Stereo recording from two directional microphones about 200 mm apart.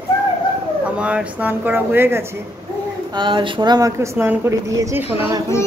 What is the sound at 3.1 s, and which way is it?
Speech, 25° right (ahead or behind).